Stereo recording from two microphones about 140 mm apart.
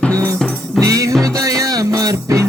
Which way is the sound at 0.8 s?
25° right (ahead or behind).